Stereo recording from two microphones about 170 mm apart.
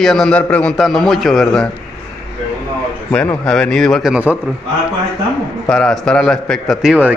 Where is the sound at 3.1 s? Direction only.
5° left (ahead or behind).